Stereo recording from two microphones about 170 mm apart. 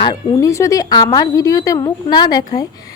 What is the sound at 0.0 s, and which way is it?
A woman's voice, 25° left (ahead or behind).